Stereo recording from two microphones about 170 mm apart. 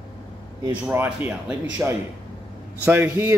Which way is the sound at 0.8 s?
10° right (ahead or behind).